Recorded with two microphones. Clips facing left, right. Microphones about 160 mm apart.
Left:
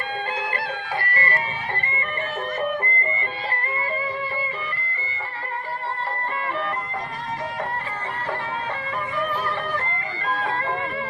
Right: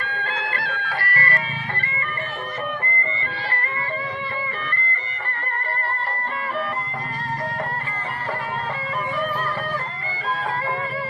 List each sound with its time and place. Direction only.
0.2 s music: 20° left (ahead or behind)
5.2 s music: 5° left (ahead or behind)